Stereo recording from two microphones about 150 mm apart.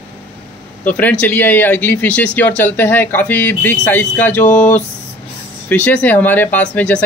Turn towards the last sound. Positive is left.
turn(degrees=10)  # may be behind; listen again after turning